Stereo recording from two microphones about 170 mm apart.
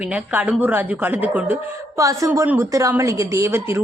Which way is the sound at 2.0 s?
20° right (ahead or behind).